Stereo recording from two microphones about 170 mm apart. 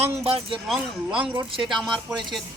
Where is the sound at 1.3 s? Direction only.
30° right (ahead or behind).